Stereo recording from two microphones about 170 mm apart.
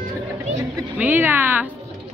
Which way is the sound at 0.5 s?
10° right (ahead or behind).